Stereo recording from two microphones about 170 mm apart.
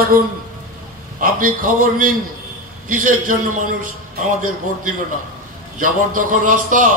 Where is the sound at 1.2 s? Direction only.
55° right (ahead or behind).